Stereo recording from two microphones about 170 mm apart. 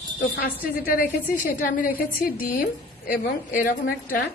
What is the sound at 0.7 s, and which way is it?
A woman's voice, 60° left (ahead or behind).